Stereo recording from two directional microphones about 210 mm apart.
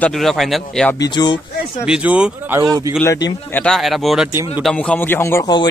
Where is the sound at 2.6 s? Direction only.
20° right (ahead or behind).